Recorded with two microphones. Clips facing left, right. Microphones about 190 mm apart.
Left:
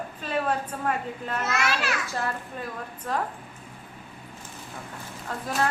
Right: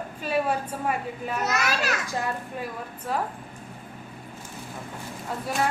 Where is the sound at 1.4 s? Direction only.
40° right (ahead or behind).